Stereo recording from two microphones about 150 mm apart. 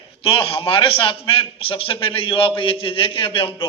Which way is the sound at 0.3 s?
35° left (ahead or behind).